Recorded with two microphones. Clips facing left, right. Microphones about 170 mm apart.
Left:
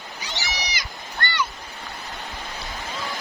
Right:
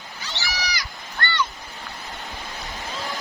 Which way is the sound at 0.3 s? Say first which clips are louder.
Right 1 dB; 20° left (ahead or behind).